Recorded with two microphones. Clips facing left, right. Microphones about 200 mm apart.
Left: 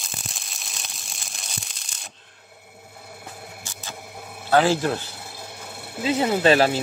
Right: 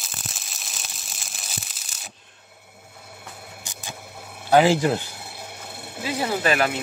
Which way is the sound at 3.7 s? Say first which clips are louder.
Even; 15° right (ahead or behind).